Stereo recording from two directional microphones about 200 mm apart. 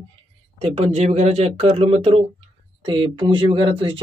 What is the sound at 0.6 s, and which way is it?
Speech, 30° right (ahead or behind).